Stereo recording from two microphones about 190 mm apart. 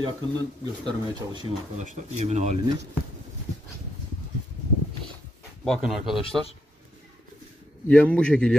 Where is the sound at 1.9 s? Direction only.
35° right (ahead or behind).